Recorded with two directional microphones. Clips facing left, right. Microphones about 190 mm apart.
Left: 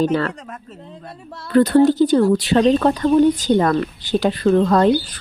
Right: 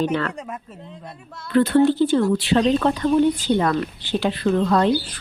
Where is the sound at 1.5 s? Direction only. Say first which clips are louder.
Left 3 dB; 40° left (ahead or behind).